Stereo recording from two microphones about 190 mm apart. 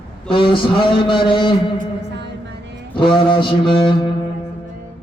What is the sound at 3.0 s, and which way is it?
Speech, 25° left (ahead or behind).